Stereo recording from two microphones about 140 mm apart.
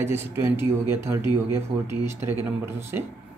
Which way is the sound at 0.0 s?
20° right (ahead or behind).